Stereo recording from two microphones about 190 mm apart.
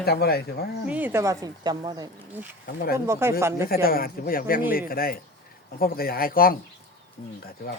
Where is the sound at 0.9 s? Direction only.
10° right (ahead or behind).